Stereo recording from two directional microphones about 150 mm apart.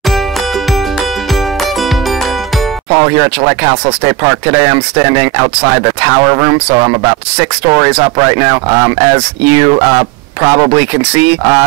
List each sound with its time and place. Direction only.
2.9 s speech: 25° right (ahead or behind)